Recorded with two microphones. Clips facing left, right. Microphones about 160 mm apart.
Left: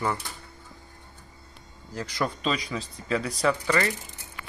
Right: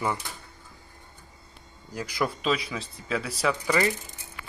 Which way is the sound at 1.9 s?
10° right (ahead or behind).